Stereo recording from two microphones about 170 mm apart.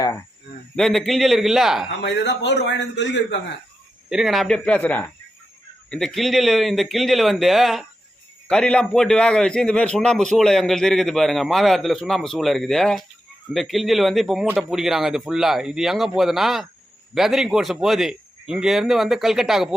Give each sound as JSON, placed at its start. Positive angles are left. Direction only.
{"t": 0.8, "sound": "a man's voice", "side_deg": 0}
{"t": 1.9, "sound": "a man's voice", "side_deg": 85}
{"t": 4.1, "sound": "a man's voice", "side_deg": 0}